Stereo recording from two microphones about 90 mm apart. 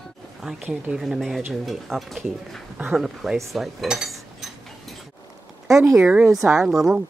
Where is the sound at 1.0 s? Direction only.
Centre (ahead or behind).